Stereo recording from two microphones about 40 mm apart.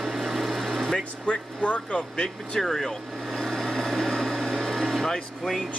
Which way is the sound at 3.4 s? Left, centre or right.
Centre.